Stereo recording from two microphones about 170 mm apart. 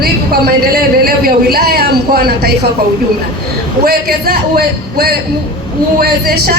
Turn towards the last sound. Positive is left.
turn(degrees=-60)  # may be behind; listen again after turning